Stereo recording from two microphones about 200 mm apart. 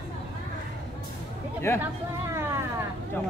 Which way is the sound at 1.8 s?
10° right (ahead or behind).